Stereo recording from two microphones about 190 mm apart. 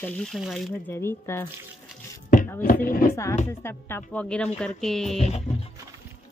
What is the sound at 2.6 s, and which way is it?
Speech, 50° left (ahead or behind).